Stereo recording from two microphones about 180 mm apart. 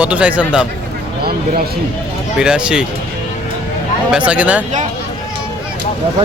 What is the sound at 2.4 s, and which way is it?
Speech, 5° right (ahead or behind).